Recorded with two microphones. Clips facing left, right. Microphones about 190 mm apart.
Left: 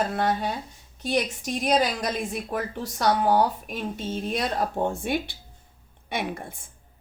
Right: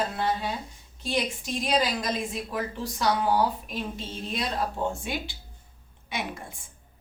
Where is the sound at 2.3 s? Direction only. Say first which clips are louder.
Left 2 dB; 60° left (ahead or behind).